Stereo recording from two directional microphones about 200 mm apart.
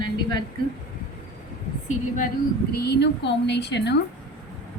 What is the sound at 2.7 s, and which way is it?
A woman's voice, 55° left (ahead or behind).